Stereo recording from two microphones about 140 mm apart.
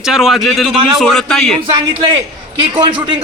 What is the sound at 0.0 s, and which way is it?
A man's voice, 5° right (ahead or behind).